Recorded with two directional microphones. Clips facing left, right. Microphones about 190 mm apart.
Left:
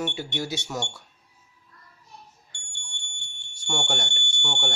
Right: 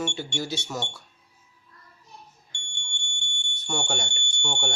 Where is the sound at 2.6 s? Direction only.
5° left (ahead or behind).